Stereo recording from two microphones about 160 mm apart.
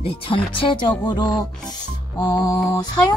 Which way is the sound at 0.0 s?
30° left (ahead or behind).